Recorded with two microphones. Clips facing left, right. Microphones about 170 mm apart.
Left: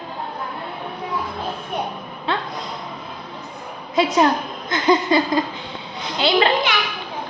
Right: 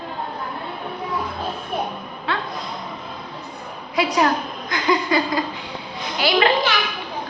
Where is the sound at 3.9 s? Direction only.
25° left (ahead or behind).